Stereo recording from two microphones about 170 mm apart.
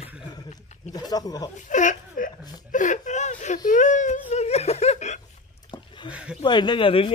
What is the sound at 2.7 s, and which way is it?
Whimper, 45° left (ahead or behind).